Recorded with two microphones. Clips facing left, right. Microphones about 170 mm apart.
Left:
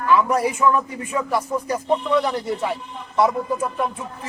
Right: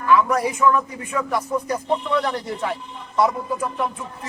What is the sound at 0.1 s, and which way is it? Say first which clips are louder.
A man's voice: even; 25° left (ahead or behind).